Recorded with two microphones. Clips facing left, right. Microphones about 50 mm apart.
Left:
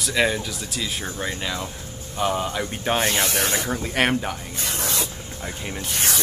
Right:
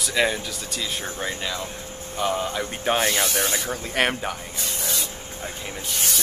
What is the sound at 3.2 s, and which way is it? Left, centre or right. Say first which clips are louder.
Speech: left 1 dB; left.